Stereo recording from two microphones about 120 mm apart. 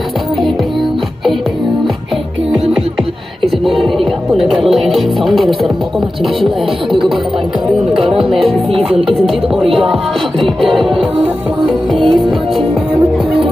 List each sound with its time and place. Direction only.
3.4 s music: centre (ahead or behind)
8.5 s music: 50° right (ahead or behind)
9.2 s music: centre (ahead or behind)